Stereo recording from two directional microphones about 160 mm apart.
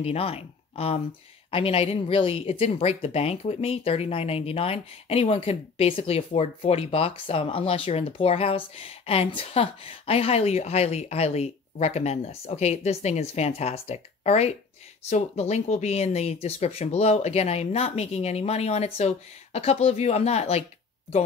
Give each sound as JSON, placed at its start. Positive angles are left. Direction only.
{"t": 0.0, "sound": "speech", "side_deg": 40}